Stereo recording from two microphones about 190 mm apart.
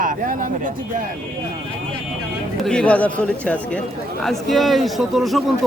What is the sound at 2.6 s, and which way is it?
A man's voice, 5° left (ahead or behind).